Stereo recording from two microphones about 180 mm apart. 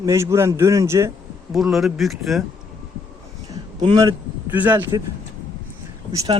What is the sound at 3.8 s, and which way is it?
Speech, 25° right (ahead or behind).